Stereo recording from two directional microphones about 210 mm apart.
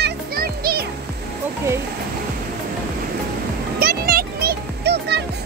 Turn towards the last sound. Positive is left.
turn(degrees=-55)  # may be behind; listen again after turning